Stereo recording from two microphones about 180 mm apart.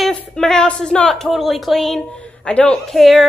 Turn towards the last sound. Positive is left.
turn(degrees=0)  # may be behind; listen again after turning